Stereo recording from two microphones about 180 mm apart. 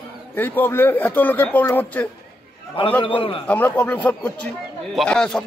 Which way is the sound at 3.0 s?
30° left (ahead or behind).